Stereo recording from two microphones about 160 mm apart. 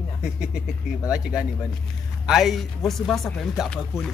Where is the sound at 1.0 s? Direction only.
5° right (ahead or behind).